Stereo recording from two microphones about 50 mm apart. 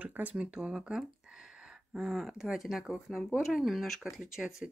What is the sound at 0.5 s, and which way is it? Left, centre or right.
Speech, centre.